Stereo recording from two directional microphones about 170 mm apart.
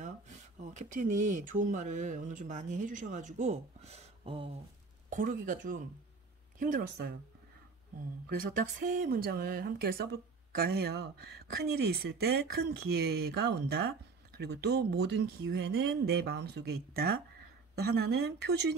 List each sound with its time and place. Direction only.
0.0 s speech: 45° right (ahead or behind)
5.1 s speech: 50° right (ahead or behind)
8.3 s a woman's voice: 60° right (ahead or behind); by 18.8 s 75° right (ahead or behind)